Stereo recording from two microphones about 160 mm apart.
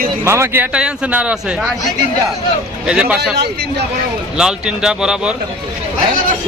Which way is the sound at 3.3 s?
90° right.